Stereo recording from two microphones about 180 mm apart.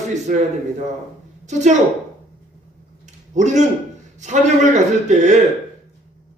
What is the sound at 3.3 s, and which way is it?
A man's voice, 40° right (ahead or behind).